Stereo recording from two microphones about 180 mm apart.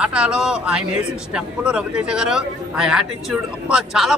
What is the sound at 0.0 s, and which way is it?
A man's voice, 5° right (ahead or behind).